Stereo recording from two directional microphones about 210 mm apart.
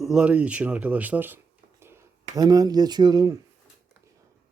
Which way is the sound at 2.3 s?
20° right (ahead or behind).